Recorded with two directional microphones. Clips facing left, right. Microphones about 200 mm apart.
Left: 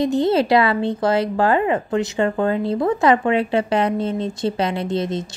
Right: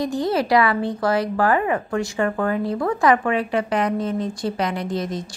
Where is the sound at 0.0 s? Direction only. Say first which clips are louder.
Left 4 dB; 25° left (ahead or behind).